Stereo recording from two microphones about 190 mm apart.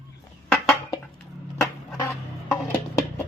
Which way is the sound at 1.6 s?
15° left (ahead or behind).